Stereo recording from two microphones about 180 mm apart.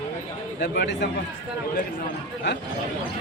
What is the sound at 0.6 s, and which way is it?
Speech, 65° left (ahead or behind).